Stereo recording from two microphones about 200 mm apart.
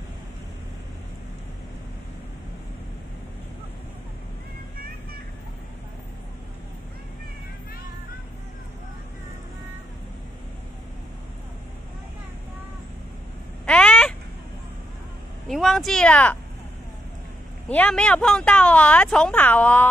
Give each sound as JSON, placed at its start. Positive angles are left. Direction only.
{"t": 13.7, "sound": "cat", "side_deg": 5}
{"t": 15.4, "sound": "speech", "side_deg": 0}
{"t": 17.6, "sound": "speech", "side_deg": 5}